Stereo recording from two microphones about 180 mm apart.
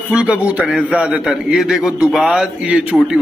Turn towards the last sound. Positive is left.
turn(degrees=-5)  # may be behind; listen again after turning